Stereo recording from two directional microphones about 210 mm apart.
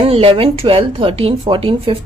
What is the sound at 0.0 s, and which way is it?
Speech, 25° right (ahead or behind).